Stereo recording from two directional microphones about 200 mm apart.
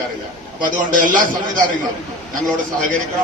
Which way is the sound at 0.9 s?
40° right (ahead or behind).